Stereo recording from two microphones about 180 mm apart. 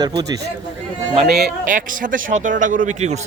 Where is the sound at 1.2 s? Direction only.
60° right (ahead or behind).